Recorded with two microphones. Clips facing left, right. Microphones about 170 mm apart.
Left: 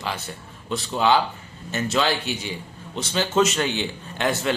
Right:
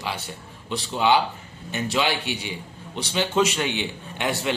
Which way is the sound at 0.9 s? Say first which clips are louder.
Even; 15° right (ahead or behind).